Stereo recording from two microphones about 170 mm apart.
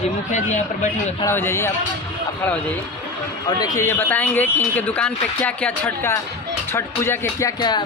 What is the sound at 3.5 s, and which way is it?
Speech, 25° left (ahead or behind).